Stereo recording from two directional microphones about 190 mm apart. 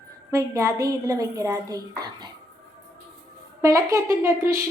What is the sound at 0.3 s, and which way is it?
A woman's voice, 15° right (ahead or behind).